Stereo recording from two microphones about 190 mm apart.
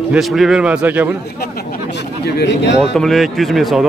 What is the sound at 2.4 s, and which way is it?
Speech, 65° left (ahead or behind).